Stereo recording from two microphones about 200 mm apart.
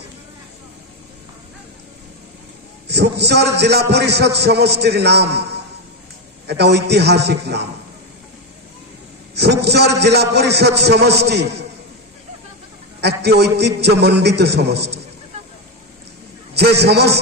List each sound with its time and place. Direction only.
2.8 s a man's voice: 55° right (ahead or behind)
9.4 s a man's voice: 55° right (ahead or behind)
13.0 s a man's voice: 55° right (ahead or behind)
16.6 s a man's voice: 55° right (ahead or behind)